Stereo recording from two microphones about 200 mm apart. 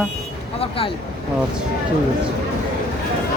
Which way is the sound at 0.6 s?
25° left (ahead or behind).